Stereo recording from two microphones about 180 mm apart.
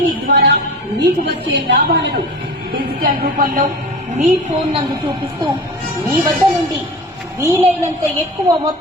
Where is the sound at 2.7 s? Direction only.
60° right (ahead or behind).